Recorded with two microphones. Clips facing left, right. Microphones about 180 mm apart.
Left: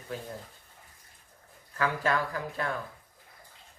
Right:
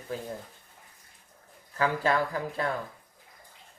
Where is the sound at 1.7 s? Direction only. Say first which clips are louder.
Right 2 dB; 30° right (ahead or behind).